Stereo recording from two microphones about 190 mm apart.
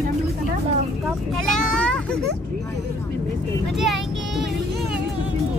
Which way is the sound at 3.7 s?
Centre (ahead or behind).